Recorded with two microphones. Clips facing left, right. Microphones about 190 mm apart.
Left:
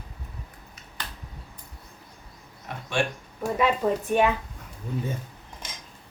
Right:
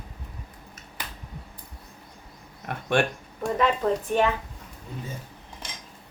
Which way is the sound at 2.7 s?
55° right (ahead or behind).